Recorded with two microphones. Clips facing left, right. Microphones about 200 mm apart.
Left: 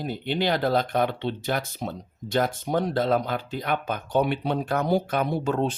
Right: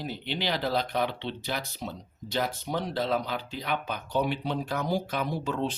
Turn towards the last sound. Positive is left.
turn(degrees=50)  # may be behind; listen again after turning